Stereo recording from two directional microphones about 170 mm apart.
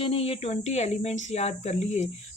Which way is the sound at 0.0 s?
35° left (ahead or behind).